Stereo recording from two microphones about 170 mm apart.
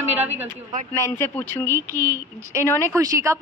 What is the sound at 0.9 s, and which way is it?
Speech, 15° left (ahead or behind).